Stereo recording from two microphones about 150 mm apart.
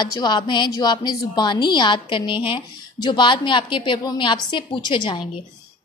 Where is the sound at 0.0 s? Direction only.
30° left (ahead or behind).